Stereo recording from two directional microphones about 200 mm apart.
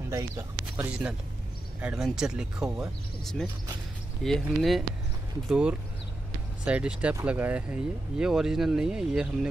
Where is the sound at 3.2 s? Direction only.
Centre (ahead or behind).